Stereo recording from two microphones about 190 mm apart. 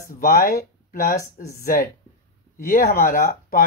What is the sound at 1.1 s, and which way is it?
Speech, 15° left (ahead or behind).